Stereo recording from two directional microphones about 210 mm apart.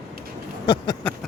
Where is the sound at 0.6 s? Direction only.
20° left (ahead or behind).